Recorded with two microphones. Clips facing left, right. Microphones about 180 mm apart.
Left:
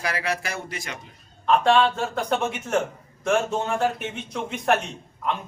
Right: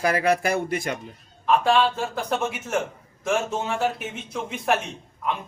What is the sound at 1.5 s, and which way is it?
A man's voice, centre (ahead or behind).